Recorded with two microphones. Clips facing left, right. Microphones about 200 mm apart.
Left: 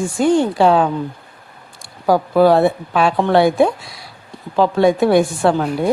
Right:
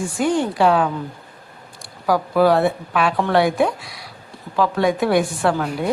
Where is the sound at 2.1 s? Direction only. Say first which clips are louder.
Left 4 dB; 25° left (ahead or behind).